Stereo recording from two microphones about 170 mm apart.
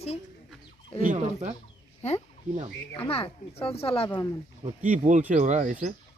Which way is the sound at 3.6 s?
35° left (ahead or behind).